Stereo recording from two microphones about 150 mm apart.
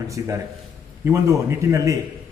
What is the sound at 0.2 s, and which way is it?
A man's voice, 20° right (ahead or behind).